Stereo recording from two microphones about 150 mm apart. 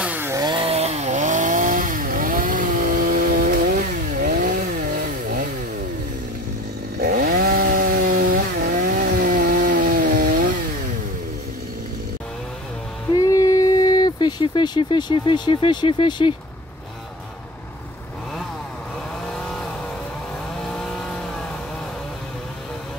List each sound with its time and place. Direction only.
0.0 s chainsaw: 10° right (ahead or behind)
0.4 s chainsaw: 30° right (ahead or behind); by 5.5 s 65° right (ahead or behind)
7.0 s chainsaw: 90° right; by 10.5 s 65° right (ahead or behind)
13.1 s a sound: 25° left (ahead or behind)
19.4 s vehicle: centre (ahead or behind)